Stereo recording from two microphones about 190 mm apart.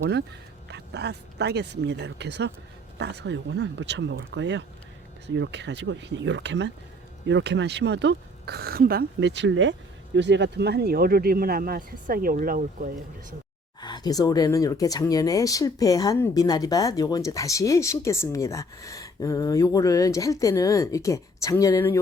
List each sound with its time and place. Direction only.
0.7 s speech: 60° right (ahead or behind); by 9.7 s 80° right
10.2 s speech: 65° right (ahead or behind); by 12.9 s 45° right (ahead or behind)
13.8 s speech: 20° left (ahead or behind)